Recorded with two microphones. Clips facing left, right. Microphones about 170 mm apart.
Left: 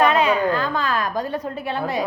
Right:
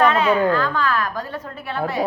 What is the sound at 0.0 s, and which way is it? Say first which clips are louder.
A woman's voice: right 1 dB; 15° left (ahead or behind).